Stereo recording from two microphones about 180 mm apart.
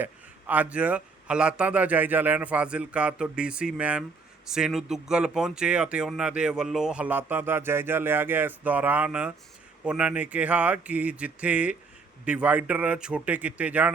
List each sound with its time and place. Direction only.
0.0 s speech: 10° right (ahead or behind)